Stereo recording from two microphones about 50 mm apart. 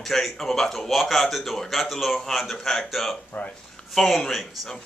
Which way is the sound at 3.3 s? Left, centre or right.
Left.